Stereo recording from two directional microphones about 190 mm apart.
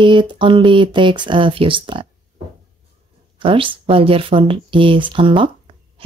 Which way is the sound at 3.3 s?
25° right (ahead or behind).